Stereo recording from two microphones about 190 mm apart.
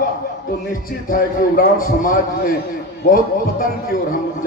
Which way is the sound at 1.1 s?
45° left (ahead or behind).